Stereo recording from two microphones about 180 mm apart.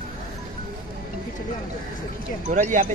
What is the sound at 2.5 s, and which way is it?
Speech, 45° right (ahead or behind).